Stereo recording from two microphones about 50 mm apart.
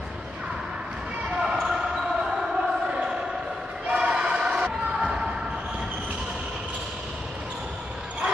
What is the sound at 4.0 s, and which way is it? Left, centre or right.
Choir, centre.